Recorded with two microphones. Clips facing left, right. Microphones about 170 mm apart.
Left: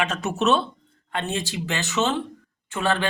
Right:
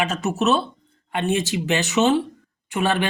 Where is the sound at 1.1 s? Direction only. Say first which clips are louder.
Right 6 dB; 15° right (ahead or behind).